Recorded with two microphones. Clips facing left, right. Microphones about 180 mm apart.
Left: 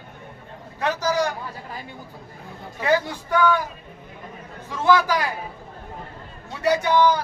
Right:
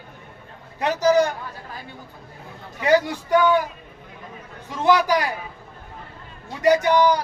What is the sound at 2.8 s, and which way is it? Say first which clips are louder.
Speech: right 3 dB; 15° right (ahead or behind).